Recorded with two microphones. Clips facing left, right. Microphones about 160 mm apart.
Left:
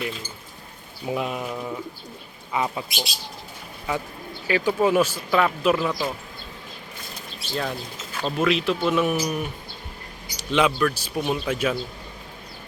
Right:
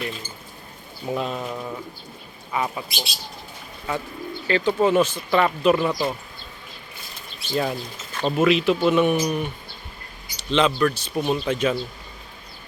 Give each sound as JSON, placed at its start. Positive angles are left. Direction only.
{"t": 1.0, "sound": "speech", "side_deg": 10}
{"t": 2.5, "sound": "speech", "side_deg": 20}
{"t": 4.4, "sound": "speech", "side_deg": 10}
{"t": 7.5, "sound": "speech", "side_deg": -5}